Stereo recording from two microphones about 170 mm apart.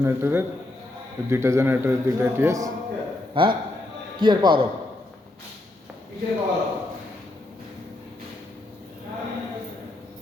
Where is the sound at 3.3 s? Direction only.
30° right (ahead or behind).